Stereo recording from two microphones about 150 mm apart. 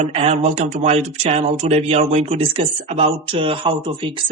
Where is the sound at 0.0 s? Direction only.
45° right (ahead or behind).